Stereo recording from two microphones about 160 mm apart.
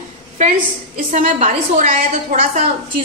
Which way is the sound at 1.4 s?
50° right (ahead or behind).